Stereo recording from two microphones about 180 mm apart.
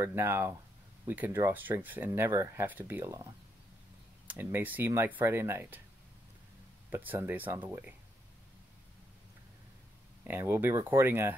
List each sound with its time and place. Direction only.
0.0 s speech: 15° right (ahead or behind)
4.3 s speech: 10° right (ahead or behind)
6.9 s speech: 10° right (ahead or behind)
10.2 s speech: 15° right (ahead or behind)